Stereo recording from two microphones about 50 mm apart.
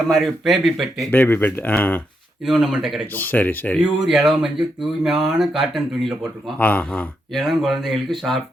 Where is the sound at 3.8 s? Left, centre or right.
Centre.